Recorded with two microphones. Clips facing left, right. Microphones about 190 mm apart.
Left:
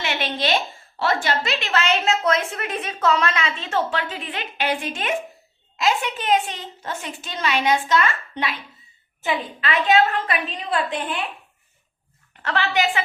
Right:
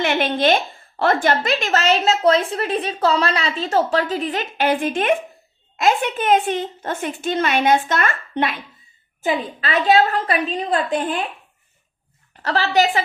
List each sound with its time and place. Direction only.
0.0 s a woman's voice: 55° right (ahead or behind)
9.2 s a woman's voice: 40° right (ahead or behind)
12.4 s a woman's voice: 35° right (ahead or behind)